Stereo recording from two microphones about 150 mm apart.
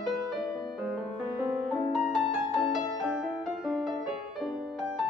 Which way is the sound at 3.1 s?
Centre (ahead or behind).